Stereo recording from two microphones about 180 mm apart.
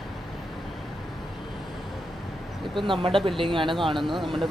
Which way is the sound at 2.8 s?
30° right (ahead or behind).